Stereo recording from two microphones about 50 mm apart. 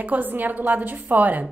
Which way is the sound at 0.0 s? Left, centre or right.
Right.